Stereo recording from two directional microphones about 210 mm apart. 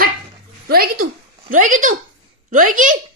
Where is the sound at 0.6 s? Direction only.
45° right (ahead or behind).